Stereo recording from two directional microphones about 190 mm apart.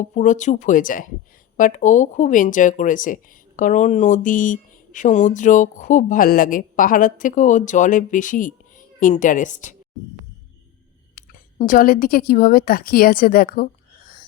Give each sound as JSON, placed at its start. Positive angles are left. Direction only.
{"t": 0.0, "sound": "speech", "side_deg": 40}
{"t": 11.2, "sound": "a sound", "side_deg": 45}
{"t": 11.6, "sound": "a woman's voice", "side_deg": 45}